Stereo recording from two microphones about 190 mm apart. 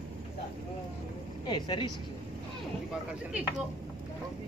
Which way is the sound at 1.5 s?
25° left (ahead or behind).